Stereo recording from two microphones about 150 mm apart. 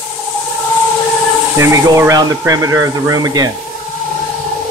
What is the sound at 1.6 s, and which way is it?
Speech, 20° right (ahead or behind).